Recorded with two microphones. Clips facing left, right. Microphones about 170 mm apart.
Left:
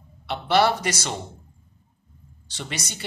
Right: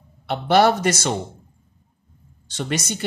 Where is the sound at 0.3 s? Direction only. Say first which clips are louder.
Right 4 dB; 50° right (ahead or behind).